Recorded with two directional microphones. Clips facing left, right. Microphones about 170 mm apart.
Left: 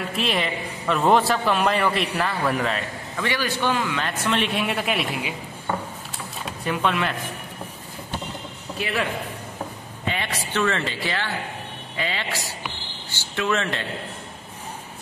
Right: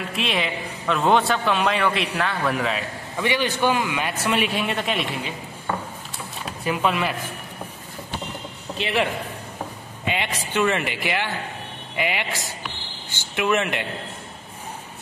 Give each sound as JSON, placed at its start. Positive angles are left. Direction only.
{"t": 0.1, "sound": "a man's voice", "side_deg": 0}
{"t": 3.2, "sound": "a man's voice", "side_deg": -20}
{"t": 6.6, "sound": "a man's voice", "side_deg": -5}
{"t": 8.7, "sound": "a man's voice", "side_deg": -25}
{"t": 10.0, "sound": "a man's voice", "side_deg": -15}